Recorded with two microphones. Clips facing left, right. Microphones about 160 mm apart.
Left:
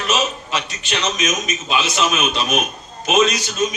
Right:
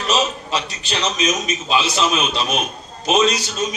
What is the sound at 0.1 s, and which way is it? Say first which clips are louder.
A man's voice: right 2 dB; 35° right (ahead or behind).